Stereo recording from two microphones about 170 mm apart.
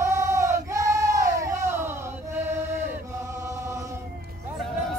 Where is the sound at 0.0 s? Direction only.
15° right (ahead or behind).